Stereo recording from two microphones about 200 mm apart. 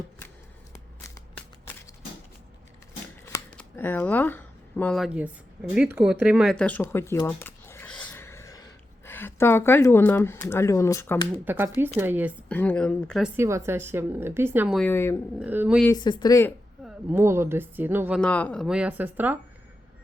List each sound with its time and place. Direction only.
1.0 s shuffling cards: 15° left (ahead or behind)
3.2 s shuffling cards: 10° left (ahead or behind)
5.7 s speech: 5° right (ahead or behind); by 11.3 s 15° left (ahead or behind)
11.4 s speech: 10° right (ahead or behind)
12.5 s speech: 5° left (ahead or behind)
13.3 s speech: 15° right (ahead or behind)
14.8 s a woman's voice: 10° left (ahead or behind)
15.4 s speech: 5° right (ahead or behind)
15.9 s speech: 20° left (ahead or behind)
16.8 s speech: 10° right (ahead or behind)
18.2 s speech: 5° left (ahead or behind); by 19.4 s 10° right (ahead or behind)